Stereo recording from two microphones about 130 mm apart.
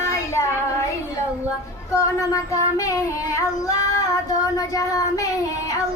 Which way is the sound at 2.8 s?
25° left (ahead or behind).